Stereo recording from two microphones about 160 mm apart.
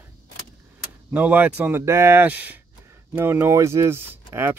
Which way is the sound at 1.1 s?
10° right (ahead or behind).